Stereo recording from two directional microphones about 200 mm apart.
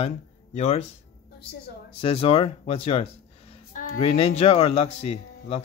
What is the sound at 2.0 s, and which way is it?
Speech, 30° left (ahead or behind).